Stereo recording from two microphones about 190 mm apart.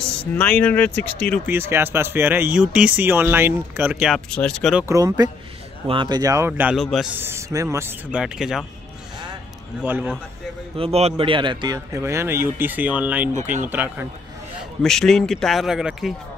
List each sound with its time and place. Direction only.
0.2 s speech: 5° left (ahead or behind)
1.4 s speech: 10° right (ahead or behind)
4.3 s a man's voice: 5° left (ahead or behind)
4.7 s speech: 15° right (ahead or behind); by 7.1 s centre (ahead or behind)
7.2 s speech: 15° right (ahead or behind)
9.8 s speech: 10° right (ahead or behind)
10.8 s speech: 30° right (ahead or behind); by 14.0 s 10° right (ahead or behind)
14.8 s a man's voice: centre (ahead or behind)